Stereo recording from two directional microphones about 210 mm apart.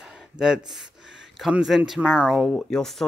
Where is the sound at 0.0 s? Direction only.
Centre (ahead or behind).